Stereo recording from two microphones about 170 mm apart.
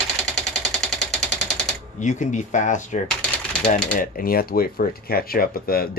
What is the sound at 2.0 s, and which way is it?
Speech, 45° left (ahead or behind).